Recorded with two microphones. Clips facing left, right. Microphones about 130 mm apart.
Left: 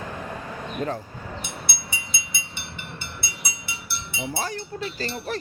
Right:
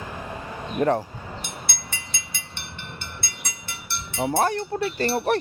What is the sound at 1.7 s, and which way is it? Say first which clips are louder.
Train: left 1 dB; 10° left (ahead or behind).